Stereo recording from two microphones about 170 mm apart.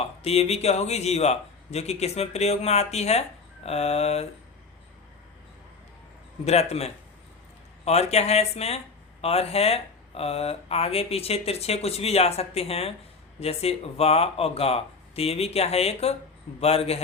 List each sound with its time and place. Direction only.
0.2 s a man's voice: 35° left (ahead or behind)
6.4 s a man's voice: 40° left (ahead or behind)